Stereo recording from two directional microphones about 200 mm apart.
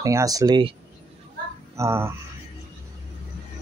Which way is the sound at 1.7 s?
15° right (ahead or behind).